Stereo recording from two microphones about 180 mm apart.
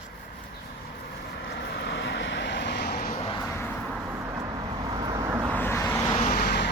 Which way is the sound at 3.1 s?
25° left (ahead or behind).